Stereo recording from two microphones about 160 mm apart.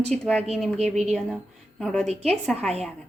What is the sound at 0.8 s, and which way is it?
Speech, 45° right (ahead or behind).